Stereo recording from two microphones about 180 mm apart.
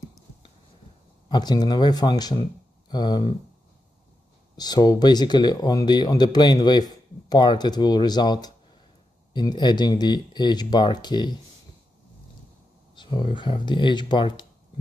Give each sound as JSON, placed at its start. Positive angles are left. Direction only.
{"t": 1.3, "sound": "speech", "side_deg": 25}
{"t": 4.6, "sound": "speech", "side_deg": 20}
{"t": 12.9, "sound": "speech", "side_deg": 25}